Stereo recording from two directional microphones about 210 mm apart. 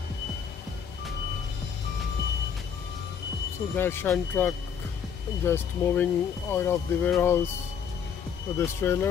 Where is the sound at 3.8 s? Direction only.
10° left (ahead or behind).